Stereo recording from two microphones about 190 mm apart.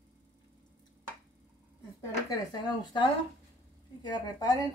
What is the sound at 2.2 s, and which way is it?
Speech, 20° left (ahead or behind).